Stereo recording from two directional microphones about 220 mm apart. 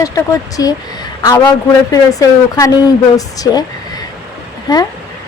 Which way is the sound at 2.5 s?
15° left (ahead or behind).